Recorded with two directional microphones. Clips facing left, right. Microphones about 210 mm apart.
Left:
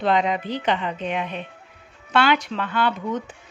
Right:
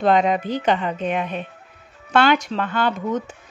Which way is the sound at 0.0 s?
45° right (ahead or behind).